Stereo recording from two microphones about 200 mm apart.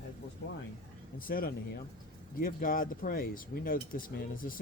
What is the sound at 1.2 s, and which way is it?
Speech, 45° left (ahead or behind).